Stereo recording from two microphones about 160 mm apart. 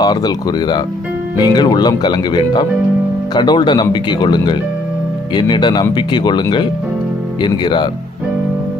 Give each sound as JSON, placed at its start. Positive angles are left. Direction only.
{"t": 0.0, "sound": "speech", "side_deg": 25}